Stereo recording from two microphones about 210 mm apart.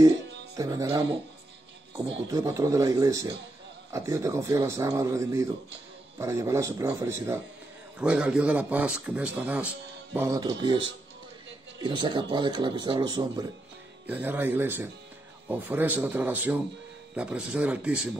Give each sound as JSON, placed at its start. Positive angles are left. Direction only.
{"t": 0.6, "sound": "a man's voice", "side_deg": -15}
{"t": 14.0, "sound": "speech", "side_deg": -10}